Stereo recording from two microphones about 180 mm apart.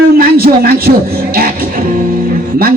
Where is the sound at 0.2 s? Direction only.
55° right (ahead or behind).